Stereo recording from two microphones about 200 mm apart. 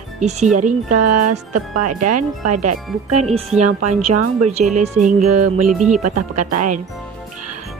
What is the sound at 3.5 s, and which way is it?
Speech, 35° right (ahead or behind).